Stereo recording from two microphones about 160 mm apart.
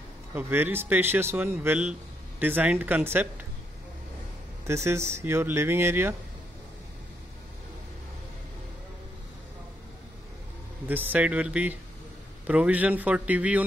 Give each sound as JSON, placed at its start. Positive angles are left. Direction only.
{"t": 0.3, "sound": "speech", "side_deg": -15}
{"t": 4.6, "sound": "speech", "side_deg": -15}
{"t": 10.9, "sound": "speech", "side_deg": -10}